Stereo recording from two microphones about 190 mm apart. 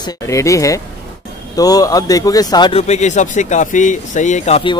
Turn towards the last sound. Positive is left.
turn(degrees=30)  # may be behind; listen again after turning